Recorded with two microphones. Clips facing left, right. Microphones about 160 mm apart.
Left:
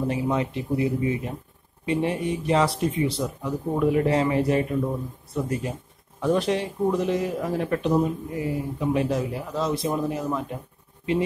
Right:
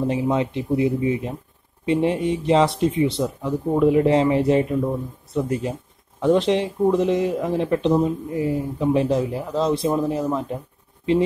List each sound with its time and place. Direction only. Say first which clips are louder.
0.1 s speech: right 4 dB; 25° right (ahead or behind)